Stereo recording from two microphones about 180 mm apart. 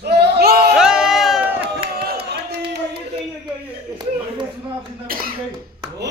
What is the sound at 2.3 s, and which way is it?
Crowd, 65° right (ahead or behind).